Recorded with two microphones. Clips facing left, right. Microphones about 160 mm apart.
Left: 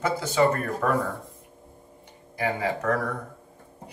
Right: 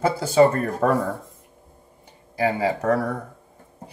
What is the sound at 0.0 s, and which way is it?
Speech, 30° right (ahead or behind).